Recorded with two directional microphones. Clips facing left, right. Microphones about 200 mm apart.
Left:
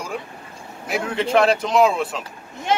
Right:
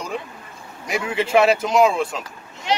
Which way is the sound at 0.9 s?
5° right (ahead or behind).